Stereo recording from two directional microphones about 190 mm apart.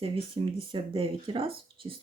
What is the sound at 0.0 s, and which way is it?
Speech, 30° right (ahead or behind).